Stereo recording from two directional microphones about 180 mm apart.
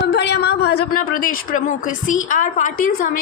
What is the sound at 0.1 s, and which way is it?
A woman's voice, 70° left (ahead or behind).